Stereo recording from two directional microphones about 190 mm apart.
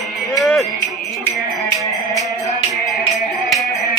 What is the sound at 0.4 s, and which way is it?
Livestock, centre (ahead or behind).